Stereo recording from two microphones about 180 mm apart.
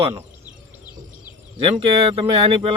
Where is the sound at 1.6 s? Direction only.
30° right (ahead or behind).